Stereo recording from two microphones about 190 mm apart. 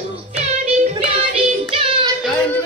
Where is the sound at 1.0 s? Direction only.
30° right (ahead or behind).